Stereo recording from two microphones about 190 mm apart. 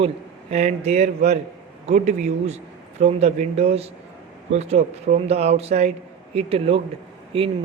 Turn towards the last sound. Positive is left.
turn(degrees=-30)  # may be behind; listen again after turning